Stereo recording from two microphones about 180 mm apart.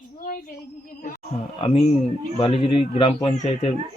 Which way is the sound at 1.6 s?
35° left (ahead or behind).